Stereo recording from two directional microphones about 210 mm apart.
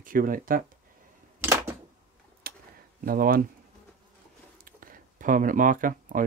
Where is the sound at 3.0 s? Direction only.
45° right (ahead or behind).